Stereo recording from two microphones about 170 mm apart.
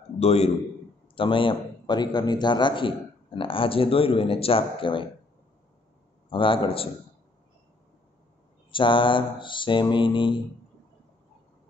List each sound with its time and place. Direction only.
0.2 s a man's voice: 35° left (ahead or behind)
6.3 s speech: 30° left (ahead or behind)
8.7 s a man's voice: 30° left (ahead or behind)